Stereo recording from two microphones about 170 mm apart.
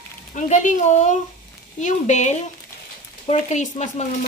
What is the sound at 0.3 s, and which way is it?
Speech, 45° left (ahead or behind).